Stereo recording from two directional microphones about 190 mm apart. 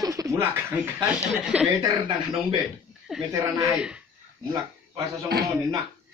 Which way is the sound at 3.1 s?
Centre (ahead or behind).